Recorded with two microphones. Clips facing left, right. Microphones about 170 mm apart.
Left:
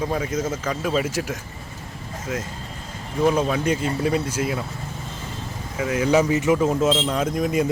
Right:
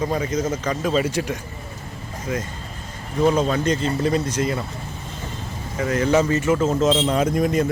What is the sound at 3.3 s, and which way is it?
Speech, 5° left (ahead or behind).